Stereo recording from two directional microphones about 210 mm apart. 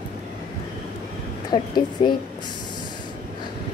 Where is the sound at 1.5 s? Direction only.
20° left (ahead or behind).